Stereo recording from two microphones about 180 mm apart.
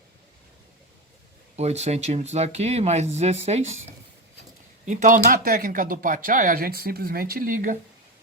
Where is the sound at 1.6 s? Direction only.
40° right (ahead or behind).